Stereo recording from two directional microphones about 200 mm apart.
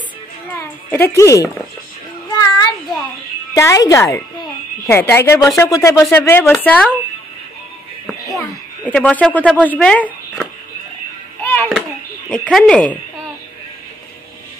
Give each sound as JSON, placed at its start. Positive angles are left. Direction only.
{"t": 0.6, "sound": "a woman's voice", "side_deg": 10}
{"t": 2.3, "sound": "a sound", "side_deg": 20}
{"t": 3.5, "sound": "a woman's voice", "side_deg": 15}
{"t": 8.4, "sound": "speech", "side_deg": 5}
{"t": 11.4, "sound": "music", "side_deg": 10}
{"t": 12.3, "sound": "speech", "side_deg": 5}